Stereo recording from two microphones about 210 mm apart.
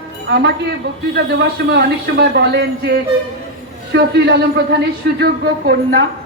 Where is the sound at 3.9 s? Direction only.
55° right (ahead or behind).